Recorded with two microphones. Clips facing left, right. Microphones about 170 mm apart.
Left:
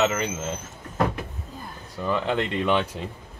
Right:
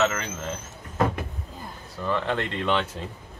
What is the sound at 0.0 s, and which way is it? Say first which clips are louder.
Speech: left 2 dB; 15° left (ahead or behind).